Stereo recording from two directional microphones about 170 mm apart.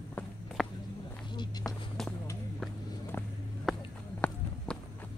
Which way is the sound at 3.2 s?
15° left (ahead or behind).